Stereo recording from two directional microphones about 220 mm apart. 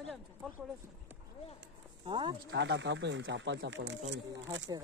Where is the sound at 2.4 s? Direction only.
55° right (ahead or behind).